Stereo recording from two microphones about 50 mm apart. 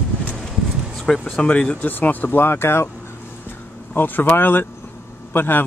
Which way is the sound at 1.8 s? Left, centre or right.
Left.